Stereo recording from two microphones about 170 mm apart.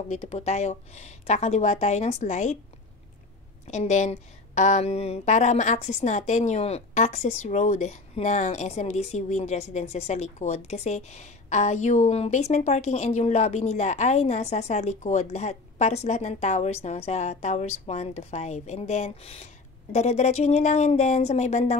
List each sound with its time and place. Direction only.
0.1 s speech: 40° left (ahead or behind)
3.6 s speech: 40° left (ahead or behind)